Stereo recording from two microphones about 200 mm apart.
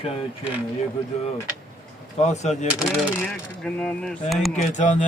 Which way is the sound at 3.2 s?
5° left (ahead or behind).